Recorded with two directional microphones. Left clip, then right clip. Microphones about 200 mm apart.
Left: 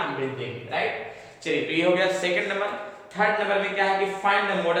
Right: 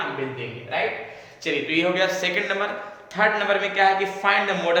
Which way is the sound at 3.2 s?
45° right (ahead or behind).